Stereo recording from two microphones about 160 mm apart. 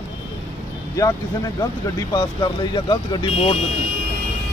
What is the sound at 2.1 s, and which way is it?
Speech, 25° left (ahead or behind).